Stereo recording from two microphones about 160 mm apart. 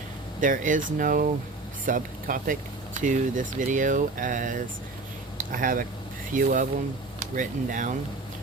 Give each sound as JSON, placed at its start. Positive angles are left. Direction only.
{"t": 0.3, "sound": "speech", "side_deg": -55}